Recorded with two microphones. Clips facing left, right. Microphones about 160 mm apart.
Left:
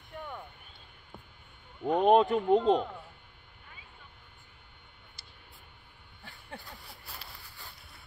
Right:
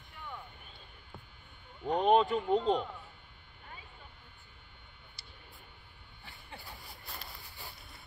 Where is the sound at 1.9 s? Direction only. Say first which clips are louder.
Left 3 dB; 50° left (ahead or behind).